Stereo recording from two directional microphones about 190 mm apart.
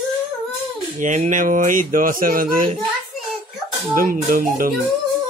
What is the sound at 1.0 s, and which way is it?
Mantra, 40° right (ahead or behind).